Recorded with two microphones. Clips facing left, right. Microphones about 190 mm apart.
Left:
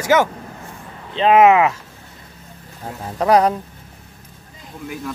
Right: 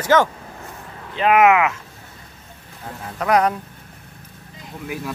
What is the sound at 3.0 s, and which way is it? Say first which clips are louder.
Speech: left 3 dB; 30° left (ahead or behind).